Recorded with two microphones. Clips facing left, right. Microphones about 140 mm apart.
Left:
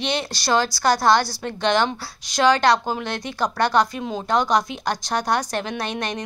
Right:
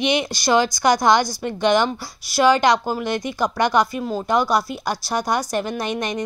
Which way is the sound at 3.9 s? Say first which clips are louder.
Right 2 dB; centre (ahead or behind).